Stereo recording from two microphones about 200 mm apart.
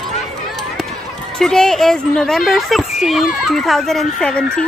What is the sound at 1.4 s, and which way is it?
A woman's voice, centre (ahead or behind).